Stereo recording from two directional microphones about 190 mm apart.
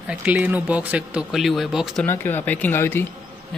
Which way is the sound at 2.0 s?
10° left (ahead or behind).